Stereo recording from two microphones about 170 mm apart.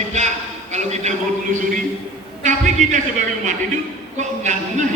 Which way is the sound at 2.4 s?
45° right (ahead or behind).